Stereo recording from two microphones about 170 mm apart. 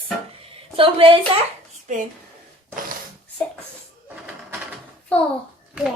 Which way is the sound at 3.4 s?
10° left (ahead or behind).